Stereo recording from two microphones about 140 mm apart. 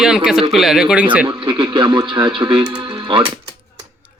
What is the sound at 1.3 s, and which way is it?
Speech, 35° right (ahead or behind).